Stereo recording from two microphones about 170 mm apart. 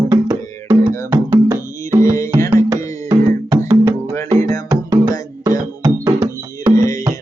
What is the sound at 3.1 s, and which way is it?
Music, 25° right (ahead or behind).